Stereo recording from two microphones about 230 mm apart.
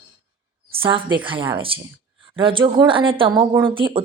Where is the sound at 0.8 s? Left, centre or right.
Right.